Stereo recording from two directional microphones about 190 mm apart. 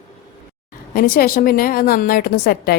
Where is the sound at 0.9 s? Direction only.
50° left (ahead or behind).